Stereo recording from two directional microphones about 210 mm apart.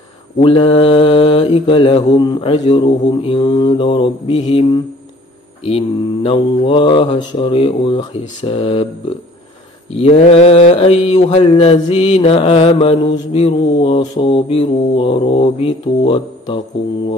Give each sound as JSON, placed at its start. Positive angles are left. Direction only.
{"t": 0.4, "sound": "mantra", "side_deg": 25}
{"t": 9.9, "sound": "mantra", "side_deg": 30}